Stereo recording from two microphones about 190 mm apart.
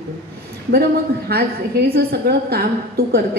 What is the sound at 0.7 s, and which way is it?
A woman's voice, 55° right (ahead or behind).